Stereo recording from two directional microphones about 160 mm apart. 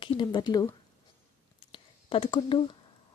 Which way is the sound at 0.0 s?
30° left (ahead or behind).